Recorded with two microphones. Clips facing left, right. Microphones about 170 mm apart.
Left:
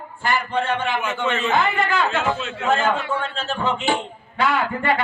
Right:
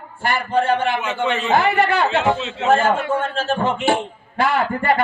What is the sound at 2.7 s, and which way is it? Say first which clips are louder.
A man's voice: right 4 dB; 55° right (ahead or behind).